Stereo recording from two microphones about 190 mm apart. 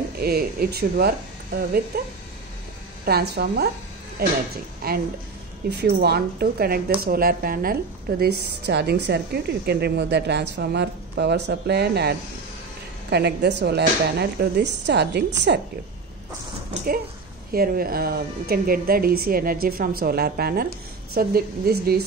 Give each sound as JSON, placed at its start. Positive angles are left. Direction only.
{"t": 0.2, "sound": "a woman's voice", "side_deg": -55}
{"t": 3.1, "sound": "a woman's voice", "side_deg": -55}
{"t": 5.7, "sound": "a woman's voice", "side_deg": -65}
{"t": 17.5, "sound": "speech", "side_deg": -50}